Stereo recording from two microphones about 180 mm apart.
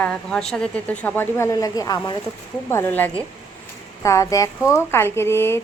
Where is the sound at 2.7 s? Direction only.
10° left (ahead or behind).